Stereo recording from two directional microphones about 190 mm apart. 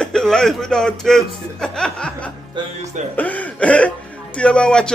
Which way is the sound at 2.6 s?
25° right (ahead or behind).